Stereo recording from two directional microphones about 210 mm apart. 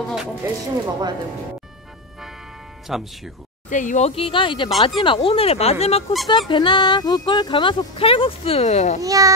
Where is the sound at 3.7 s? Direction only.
35° left (ahead or behind).